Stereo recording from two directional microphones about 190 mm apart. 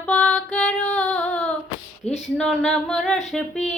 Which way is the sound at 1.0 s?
Centre (ahead or behind).